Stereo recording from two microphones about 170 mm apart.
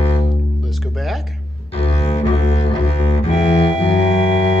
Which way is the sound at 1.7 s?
35° left (ahead or behind).